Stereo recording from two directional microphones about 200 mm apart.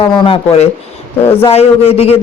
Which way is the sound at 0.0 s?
25° left (ahead or behind).